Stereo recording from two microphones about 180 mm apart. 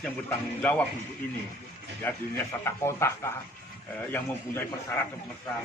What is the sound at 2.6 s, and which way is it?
A man's voice, 15° left (ahead or behind).